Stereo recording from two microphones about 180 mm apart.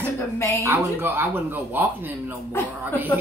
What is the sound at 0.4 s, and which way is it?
Speech, 10° left (ahead or behind).